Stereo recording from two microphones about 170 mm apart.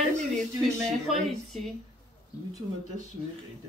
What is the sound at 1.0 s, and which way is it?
Speech, centre (ahead or behind).